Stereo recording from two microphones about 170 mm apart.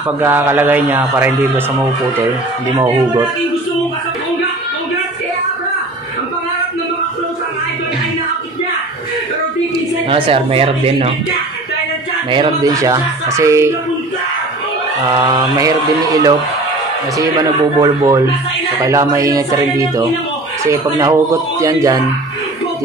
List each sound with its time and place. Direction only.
0.2 s speech: 15° right (ahead or behind)
2.7 s speech: 20° right (ahead or behind)
10.0 s speech: 30° right (ahead or behind)
12.3 s speech: 30° right (ahead or behind)
15.1 s speech: 25° right (ahead or behind)